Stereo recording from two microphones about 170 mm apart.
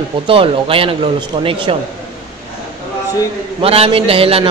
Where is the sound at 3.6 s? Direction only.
35° right (ahead or behind).